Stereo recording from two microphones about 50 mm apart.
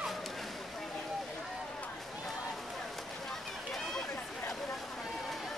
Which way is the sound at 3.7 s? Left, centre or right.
Centre.